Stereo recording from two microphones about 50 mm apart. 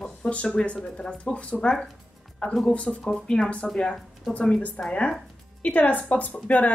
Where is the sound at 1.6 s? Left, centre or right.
Centre.